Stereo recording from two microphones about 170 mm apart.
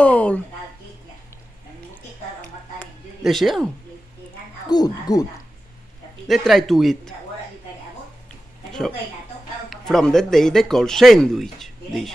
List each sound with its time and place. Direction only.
0.0 s a sound: 10° left (ahead or behind)
3.3 s speech: centre (ahead or behind)
4.6 s speech: 25° left (ahead or behind)
6.2 s speech: centre (ahead or behind)
9.7 s speech: centre (ahead or behind)